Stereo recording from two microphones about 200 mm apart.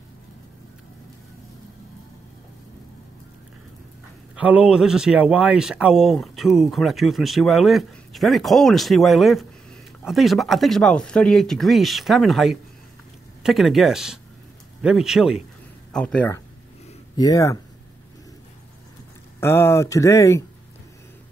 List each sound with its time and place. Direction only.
4.4 s speech: 5° right (ahead or behind)
17.2 s speech: 15° left (ahead or behind)
19.4 s speech: 15° left (ahead or behind)